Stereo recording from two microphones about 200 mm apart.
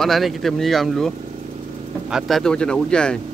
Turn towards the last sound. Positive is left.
turn(degrees=5)  # may be behind; listen again after turning